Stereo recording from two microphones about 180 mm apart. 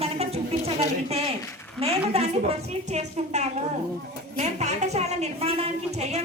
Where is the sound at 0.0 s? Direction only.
35° right (ahead or behind).